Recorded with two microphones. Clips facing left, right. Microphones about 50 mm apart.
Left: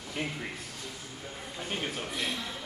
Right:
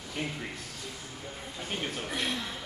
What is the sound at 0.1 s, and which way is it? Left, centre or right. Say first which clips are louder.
Speech: left 1 dB; centre.